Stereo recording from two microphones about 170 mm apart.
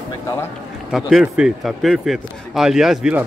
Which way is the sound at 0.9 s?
5° right (ahead or behind).